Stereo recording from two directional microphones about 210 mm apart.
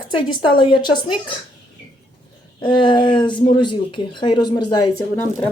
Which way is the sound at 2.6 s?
20° left (ahead or behind).